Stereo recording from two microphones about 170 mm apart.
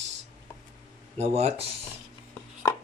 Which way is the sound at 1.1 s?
40° right (ahead or behind).